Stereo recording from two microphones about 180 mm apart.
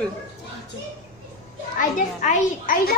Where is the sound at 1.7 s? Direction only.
45° left (ahead or behind).